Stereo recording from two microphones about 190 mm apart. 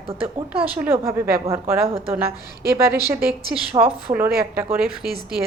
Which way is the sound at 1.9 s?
30° right (ahead or behind).